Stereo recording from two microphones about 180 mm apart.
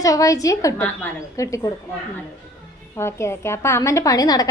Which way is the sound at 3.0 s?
15° left (ahead or behind).